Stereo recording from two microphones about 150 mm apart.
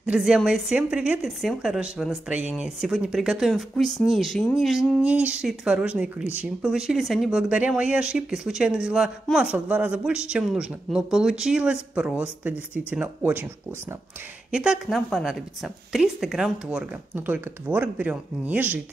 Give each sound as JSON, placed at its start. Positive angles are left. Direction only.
{"t": 0.0, "sound": "a woman's voice", "side_deg": -5}
{"t": 14.5, "sound": "a woman's voice", "side_deg": -5}